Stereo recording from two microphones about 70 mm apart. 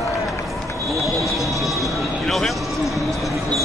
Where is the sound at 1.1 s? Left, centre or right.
Centre.